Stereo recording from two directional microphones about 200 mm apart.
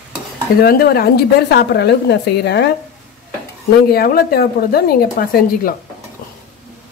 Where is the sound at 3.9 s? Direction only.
50° left (ahead or behind).